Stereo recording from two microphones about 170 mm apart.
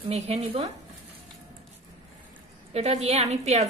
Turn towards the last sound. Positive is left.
turn(degrees=-40)  # may be behind; listen again after turning